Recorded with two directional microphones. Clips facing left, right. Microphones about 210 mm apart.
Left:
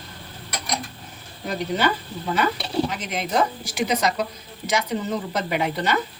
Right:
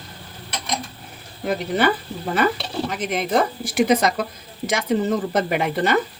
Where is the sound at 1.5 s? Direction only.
55° right (ahead or behind).